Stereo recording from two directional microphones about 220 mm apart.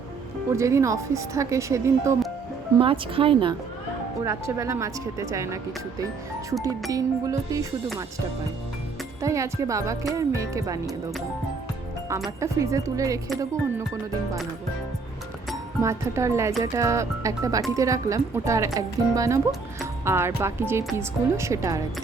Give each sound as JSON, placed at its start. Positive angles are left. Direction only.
{"t": 0.5, "sound": "speech", "side_deg": -15}
{"t": 2.7, "sound": "speech", "side_deg": -25}
{"t": 4.3, "sound": "speech", "side_deg": -15}
{"t": 9.2, "sound": "speech", "side_deg": -15}
{"t": 12.4, "sound": "speech", "side_deg": -15}
{"t": 15.8, "sound": "speech", "side_deg": -15}